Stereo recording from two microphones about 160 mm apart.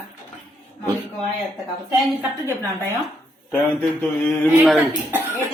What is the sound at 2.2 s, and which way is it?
Speech, 15° right (ahead or behind).